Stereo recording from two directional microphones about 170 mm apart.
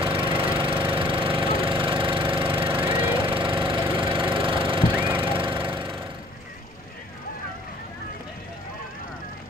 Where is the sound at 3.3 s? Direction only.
30° right (ahead or behind).